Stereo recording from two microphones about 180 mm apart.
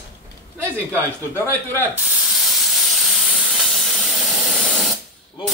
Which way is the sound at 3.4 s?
Centre (ahead or behind).